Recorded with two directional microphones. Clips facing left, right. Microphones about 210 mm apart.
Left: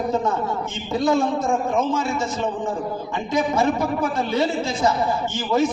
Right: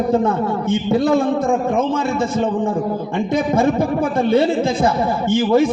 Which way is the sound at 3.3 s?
55° right (ahead or behind).